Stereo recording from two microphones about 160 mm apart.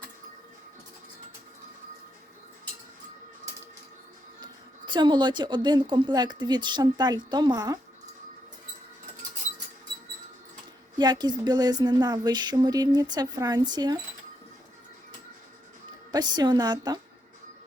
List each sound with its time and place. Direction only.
4.9 s speech: 30° right (ahead or behind)
10.9 s speech: 25° right (ahead or behind)
16.1 s speech: 25° right (ahead or behind)